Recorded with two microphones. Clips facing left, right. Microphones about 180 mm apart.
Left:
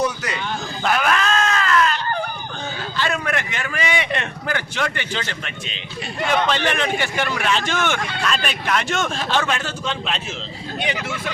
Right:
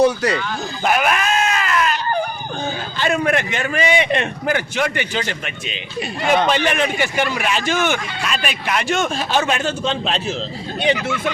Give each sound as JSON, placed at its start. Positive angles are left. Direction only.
{"t": 0.0, "sound": "speech", "side_deg": -35}
{"t": 0.9, "sound": "a sound", "side_deg": -15}
{"t": 3.0, "sound": "a man's voice", "side_deg": -20}